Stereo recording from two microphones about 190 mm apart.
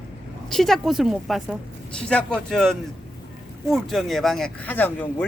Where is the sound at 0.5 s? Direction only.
Centre (ahead or behind).